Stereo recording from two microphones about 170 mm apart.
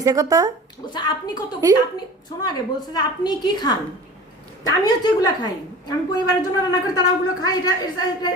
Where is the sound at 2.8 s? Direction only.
25° left (ahead or behind).